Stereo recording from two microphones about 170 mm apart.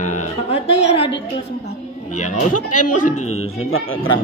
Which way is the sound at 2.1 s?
45° left (ahead or behind).